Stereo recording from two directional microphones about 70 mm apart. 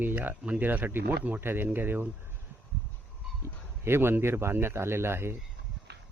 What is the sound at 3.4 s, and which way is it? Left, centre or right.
Speech, right.